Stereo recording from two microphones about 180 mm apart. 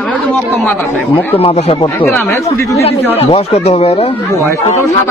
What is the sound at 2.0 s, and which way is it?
Speech, 10° left (ahead or behind).